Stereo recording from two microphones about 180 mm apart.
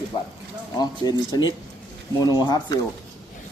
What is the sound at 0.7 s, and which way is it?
A man's voice, 20° left (ahead or behind).